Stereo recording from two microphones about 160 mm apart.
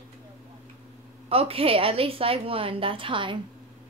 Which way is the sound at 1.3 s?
35° right (ahead or behind).